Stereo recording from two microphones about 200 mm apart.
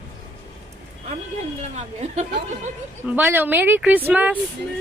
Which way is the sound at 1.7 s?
35° right (ahead or behind).